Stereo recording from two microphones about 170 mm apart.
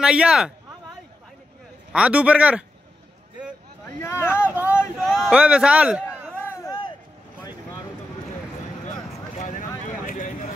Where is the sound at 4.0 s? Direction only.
15° left (ahead or behind).